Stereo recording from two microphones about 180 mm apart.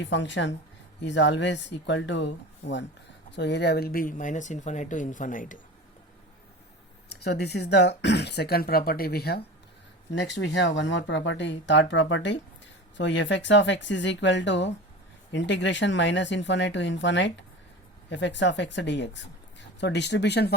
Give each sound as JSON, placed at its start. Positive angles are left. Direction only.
{"t": 0.0, "sound": "speech", "side_deg": 85}
{"t": 7.1, "sound": "speech", "side_deg": 65}
{"t": 10.2, "sound": "speech", "side_deg": 75}